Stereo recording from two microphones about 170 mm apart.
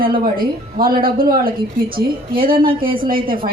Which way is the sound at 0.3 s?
60° right (ahead or behind).